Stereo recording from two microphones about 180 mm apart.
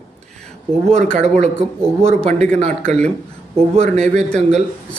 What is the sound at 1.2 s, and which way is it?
A man's voice, 35° right (ahead or behind).